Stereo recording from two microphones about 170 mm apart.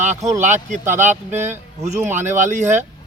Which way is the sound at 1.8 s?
45° right (ahead or behind).